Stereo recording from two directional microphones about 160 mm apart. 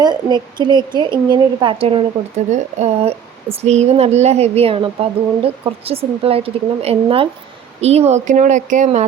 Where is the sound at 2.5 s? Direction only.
45° right (ahead or behind).